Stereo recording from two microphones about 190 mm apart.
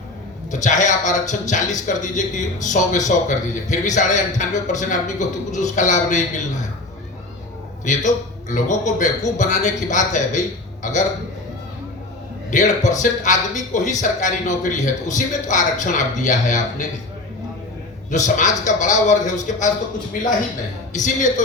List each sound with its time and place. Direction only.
0.5 s speech: 40° left (ahead or behind)
7.9 s speech: 40° left (ahead or behind)
12.5 s speech: 40° left (ahead or behind)
18.1 s speech: 40° left (ahead or behind)
20.9 s speech: 40° left (ahead or behind)